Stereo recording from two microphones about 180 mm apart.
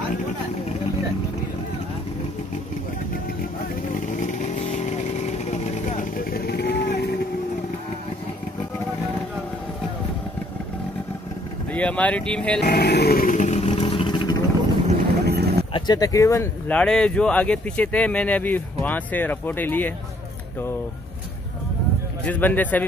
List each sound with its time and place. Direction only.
4.2 s vehicle: 45° left (ahead or behind); by 7.1 s 65° left (ahead or behind)
11.7 s speech: 5° left (ahead or behind)
12.6 s vehicle: 60° left (ahead or behind); by 14.5 s 20° left (ahead or behind)
15.2 s a sound: 65° right (ahead or behind)
15.7 s speech: 20° left (ahead or behind)
22.2 s speech: 10° left (ahead or behind)